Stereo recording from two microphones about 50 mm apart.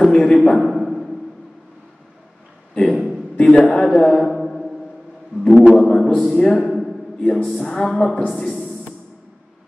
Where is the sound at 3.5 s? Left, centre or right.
Centre.